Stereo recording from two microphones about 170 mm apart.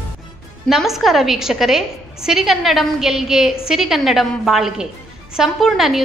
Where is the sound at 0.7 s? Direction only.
Centre (ahead or behind).